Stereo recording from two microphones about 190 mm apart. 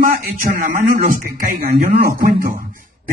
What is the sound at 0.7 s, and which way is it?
Speech, 45° right (ahead or behind).